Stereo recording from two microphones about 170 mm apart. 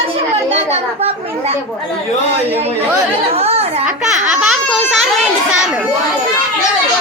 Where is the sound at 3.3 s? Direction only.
35° right (ahead or behind).